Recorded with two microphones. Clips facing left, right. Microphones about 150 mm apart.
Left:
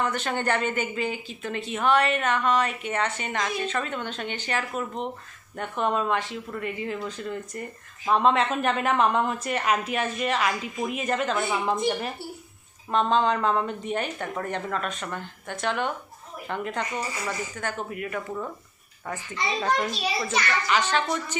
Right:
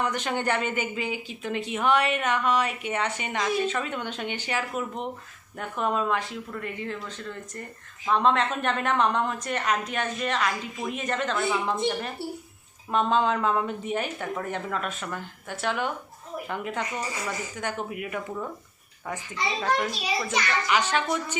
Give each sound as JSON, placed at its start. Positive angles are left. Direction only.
{"t": 0.0, "sound": "a woman's voice", "side_deg": -15}
{"t": 12.9, "sound": "speech", "side_deg": -10}
{"t": 20.3, "sound": "speech", "side_deg": -10}